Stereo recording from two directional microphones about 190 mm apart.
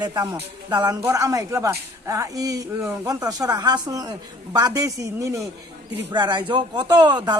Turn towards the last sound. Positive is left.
turn(degrees=-20)  # may be behind; listen again after turning